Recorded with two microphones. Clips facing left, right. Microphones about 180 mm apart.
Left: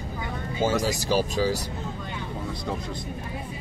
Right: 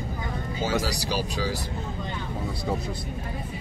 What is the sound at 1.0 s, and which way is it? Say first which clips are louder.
Speech: left 5 dB; 45° left (ahead or behind).